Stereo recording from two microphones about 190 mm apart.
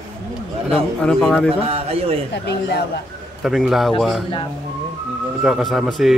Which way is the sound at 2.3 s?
60° left (ahead or behind).